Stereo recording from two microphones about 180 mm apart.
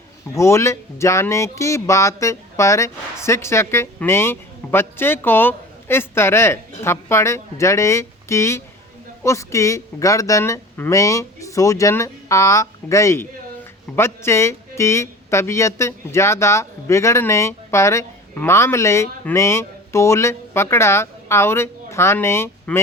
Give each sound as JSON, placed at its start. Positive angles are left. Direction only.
{"t": 0.3, "sound": "speech", "side_deg": 15}